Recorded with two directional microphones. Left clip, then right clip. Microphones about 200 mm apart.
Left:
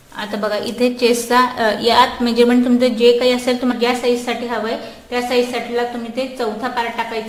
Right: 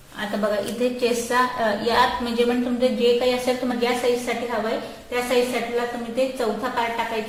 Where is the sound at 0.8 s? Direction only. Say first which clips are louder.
Left 10 dB; 35° left (ahead or behind).